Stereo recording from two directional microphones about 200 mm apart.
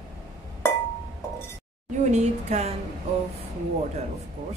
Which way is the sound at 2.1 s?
35° right (ahead or behind).